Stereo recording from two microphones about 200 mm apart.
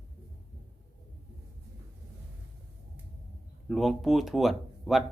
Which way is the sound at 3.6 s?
Centre (ahead or behind).